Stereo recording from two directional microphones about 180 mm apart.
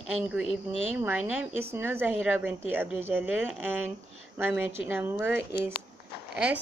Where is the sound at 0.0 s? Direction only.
5° right (ahead or behind).